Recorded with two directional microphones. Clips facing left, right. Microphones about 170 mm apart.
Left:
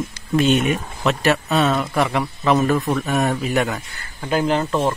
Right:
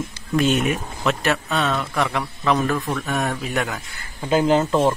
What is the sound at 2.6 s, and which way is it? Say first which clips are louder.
Speech: left 4 dB; 20° left (ahead or behind).